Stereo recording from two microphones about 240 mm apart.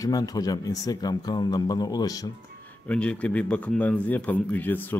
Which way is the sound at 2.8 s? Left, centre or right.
Centre.